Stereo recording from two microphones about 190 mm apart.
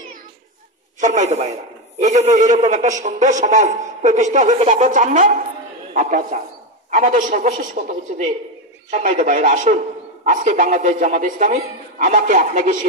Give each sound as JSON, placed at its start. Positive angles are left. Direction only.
{"t": 1.0, "sound": "a man's voice", "side_deg": -40}